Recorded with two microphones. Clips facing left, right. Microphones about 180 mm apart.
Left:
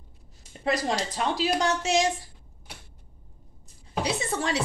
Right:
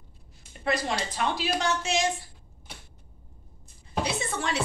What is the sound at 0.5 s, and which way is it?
A woman's voice, 35° left (ahead or behind).